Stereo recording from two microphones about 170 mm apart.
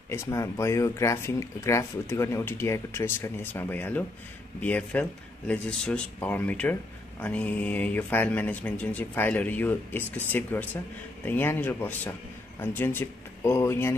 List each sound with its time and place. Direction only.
0.1 s speech: 15° left (ahead or behind)